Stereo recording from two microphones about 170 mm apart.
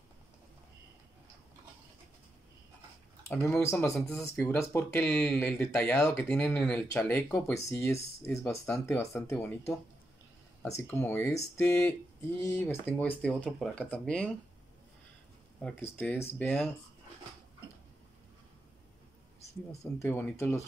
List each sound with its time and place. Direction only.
3.3 s speech: 15° left (ahead or behind)
5.0 s speech: 5° left (ahead or behind)
5.3 s speech: 15° left (ahead or behind)
10.8 s speech: 15° left (ahead or behind)
15.6 s speech: 10° left (ahead or behind)
19.8 s speech: 15° left (ahead or behind)